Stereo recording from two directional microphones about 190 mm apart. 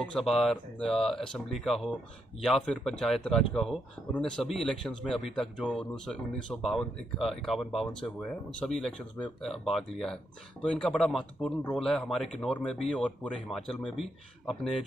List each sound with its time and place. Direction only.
0.0 s a man's voice: centre (ahead or behind)